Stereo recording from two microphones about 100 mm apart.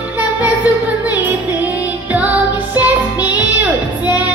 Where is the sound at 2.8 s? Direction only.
15° right (ahead or behind).